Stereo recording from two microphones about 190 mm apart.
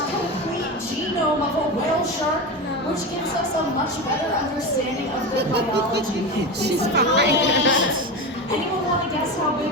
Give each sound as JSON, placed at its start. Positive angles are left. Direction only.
{"t": 5.5, "sound": "a woman's voice", "side_deg": -60}
{"t": 7.3, "sound": "speech", "side_deg": 70}